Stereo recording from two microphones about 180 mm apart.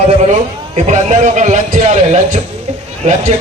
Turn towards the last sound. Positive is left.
turn(degrees=-40)  # may be behind; listen again after turning